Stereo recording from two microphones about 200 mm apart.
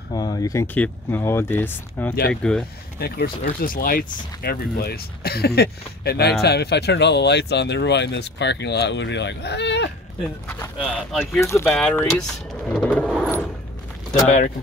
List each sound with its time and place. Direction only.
0.1 s speech: 20° left (ahead or behind)
3.0 s speech: 50° left (ahead or behind)
10.5 s speech: 10° left (ahead or behind)
11.0 s speech: centre (ahead or behind)
11.4 s speech: 15° left (ahead or behind)
12.7 s vehicle: 5° left (ahead or behind)
14.2 s speech: 35° left (ahead or behind)